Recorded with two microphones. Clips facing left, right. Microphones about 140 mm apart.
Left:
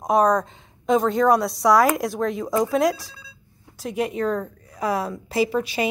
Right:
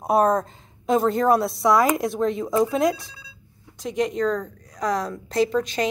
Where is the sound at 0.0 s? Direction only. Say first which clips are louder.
Left 1 dB; 5° right (ahead or behind).